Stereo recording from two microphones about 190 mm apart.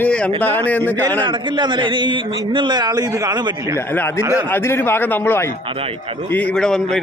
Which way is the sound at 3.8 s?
10° left (ahead or behind).